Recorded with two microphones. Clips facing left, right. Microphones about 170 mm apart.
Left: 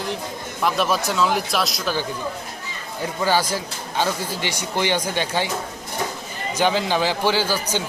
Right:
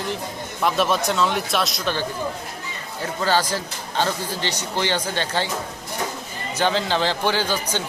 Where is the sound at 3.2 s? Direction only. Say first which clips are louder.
Even; 10° left (ahead or behind).